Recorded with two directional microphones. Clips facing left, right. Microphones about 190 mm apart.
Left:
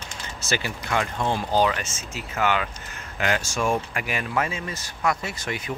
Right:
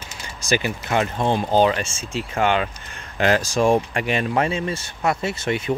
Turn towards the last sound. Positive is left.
turn(degrees=-25)  # may be behind; listen again after turning